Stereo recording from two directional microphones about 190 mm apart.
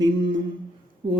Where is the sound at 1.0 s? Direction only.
25° right (ahead or behind).